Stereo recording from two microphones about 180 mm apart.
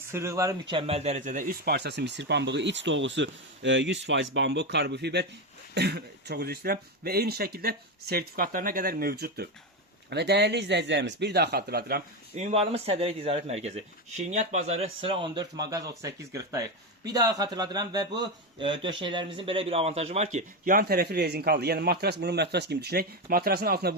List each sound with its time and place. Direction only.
0.1 s speech: 15° right (ahead or behind); by 12.0 s 60° right (ahead or behind)
12.3 s speech: 40° right (ahead or behind); by 23.9 s 60° right (ahead or behind)